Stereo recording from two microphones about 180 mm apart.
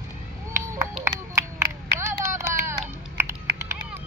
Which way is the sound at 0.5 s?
15° right (ahead or behind).